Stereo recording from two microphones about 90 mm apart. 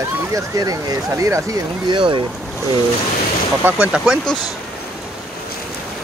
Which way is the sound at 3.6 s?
10° right (ahead or behind).